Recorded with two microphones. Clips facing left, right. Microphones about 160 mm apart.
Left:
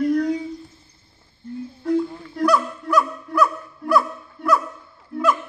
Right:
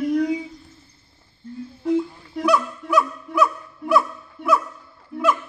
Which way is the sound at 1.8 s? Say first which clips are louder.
Even; 5° right (ahead or behind).